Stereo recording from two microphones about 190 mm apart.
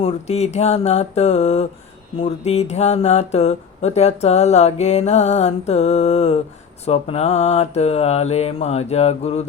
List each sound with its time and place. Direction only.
0.0 s speech: 35° left (ahead or behind)